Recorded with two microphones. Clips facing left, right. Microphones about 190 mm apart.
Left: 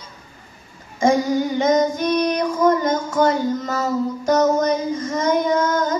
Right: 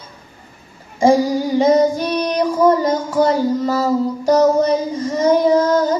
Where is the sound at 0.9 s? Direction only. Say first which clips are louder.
Right 3 dB; 35° right (ahead or behind).